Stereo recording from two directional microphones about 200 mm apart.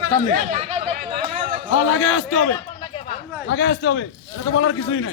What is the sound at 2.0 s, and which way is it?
Speech, 90° left.